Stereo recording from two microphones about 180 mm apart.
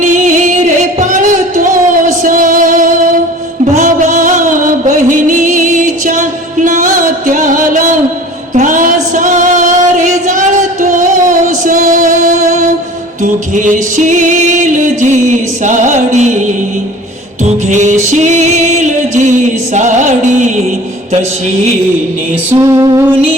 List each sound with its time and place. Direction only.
0.0 s music: 45° right (ahead or behind)
17.4 s music: 40° right (ahead or behind)
22.4 s music: 15° right (ahead or behind)